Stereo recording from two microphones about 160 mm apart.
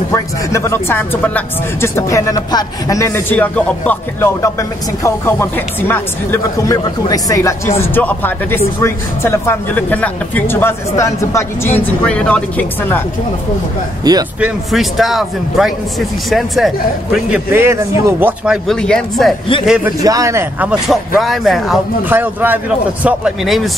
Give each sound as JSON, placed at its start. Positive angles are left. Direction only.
{"t": 0.1, "sound": "speech", "side_deg": 20}
{"t": 14.0, "sound": "speech", "side_deg": -25}
{"t": 14.4, "sound": "a man's voice", "side_deg": 0}
{"t": 17.5, "sound": "a man's voice", "side_deg": -15}
{"t": 18.4, "sound": "a man's voice", "side_deg": 0}
{"t": 20.0, "sound": "a man's voice", "side_deg": -20}
{"t": 22.0, "sound": "a man's voice", "side_deg": -10}